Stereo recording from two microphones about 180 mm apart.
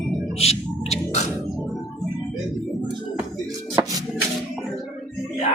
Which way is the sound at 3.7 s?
20° right (ahead or behind).